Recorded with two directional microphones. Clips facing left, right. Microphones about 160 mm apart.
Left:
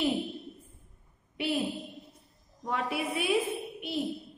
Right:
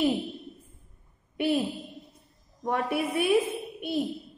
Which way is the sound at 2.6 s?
50° right (ahead or behind).